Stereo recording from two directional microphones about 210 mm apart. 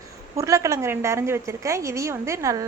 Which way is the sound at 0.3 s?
15° right (ahead or behind).